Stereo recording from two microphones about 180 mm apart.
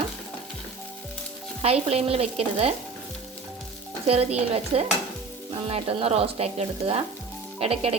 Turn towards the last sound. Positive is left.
turn(degrees=-35)  # may be behind; listen again after turning